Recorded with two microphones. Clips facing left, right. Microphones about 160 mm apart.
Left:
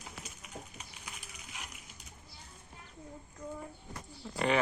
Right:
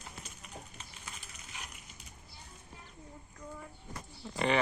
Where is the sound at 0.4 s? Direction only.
10° left (ahead or behind).